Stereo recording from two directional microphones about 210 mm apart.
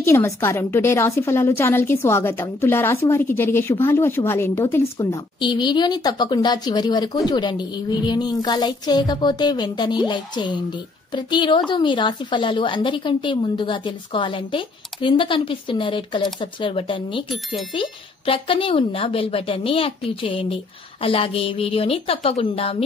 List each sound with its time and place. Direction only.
0.0 s a woman's voice: 10° left (ahead or behind); by 22.8 s 25° left (ahead or behind)